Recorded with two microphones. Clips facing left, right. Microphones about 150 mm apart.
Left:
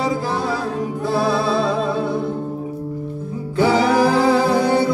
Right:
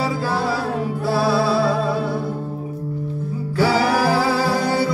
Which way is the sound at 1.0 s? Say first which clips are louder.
Even; 20° left (ahead or behind).